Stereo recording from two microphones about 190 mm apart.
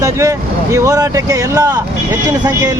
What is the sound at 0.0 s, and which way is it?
A man's voice, 15° right (ahead or behind).